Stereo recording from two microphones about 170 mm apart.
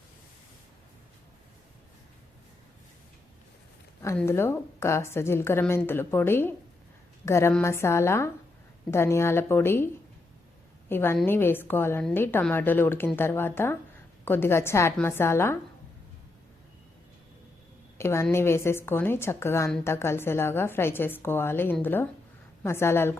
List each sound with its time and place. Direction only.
4.3 s a woman's voice: 15° left (ahead or behind)
17.9 s a woman's voice: 15° left (ahead or behind)